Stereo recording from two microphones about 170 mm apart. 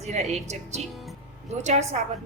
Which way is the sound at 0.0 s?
40° right (ahead or behind).